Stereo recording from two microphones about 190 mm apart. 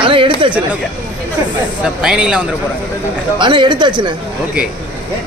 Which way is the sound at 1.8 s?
5° right (ahead or behind).